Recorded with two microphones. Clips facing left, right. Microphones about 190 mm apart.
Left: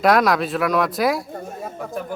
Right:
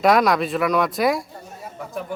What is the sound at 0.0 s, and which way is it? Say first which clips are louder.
Speech: even; centre (ahead or behind).